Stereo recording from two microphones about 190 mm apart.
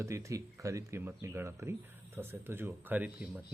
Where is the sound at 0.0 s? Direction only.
15° right (ahead or behind).